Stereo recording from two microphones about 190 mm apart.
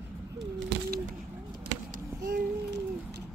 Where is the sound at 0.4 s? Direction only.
65° right (ahead or behind).